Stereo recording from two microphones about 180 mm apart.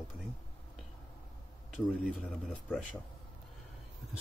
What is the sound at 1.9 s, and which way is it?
Speech, 5° right (ahead or behind).